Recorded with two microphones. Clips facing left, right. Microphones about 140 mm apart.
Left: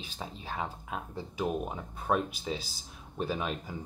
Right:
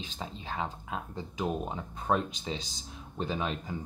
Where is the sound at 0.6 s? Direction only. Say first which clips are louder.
Right 1 dB; 20° right (ahead or behind).